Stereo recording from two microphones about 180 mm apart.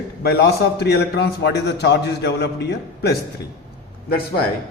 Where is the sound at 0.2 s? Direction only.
60° left (ahead or behind).